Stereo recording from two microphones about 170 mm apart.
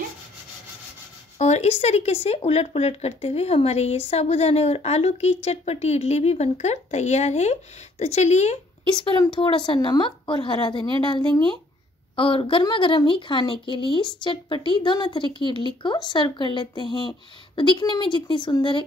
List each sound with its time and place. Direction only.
1.4 s speech: 40° left (ahead or behind)
8.9 s speech: 25° left (ahead or behind)
12.2 s speech: 30° left (ahead or behind)